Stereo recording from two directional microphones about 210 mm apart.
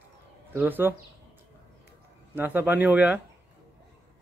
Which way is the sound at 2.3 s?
10° right (ahead or behind).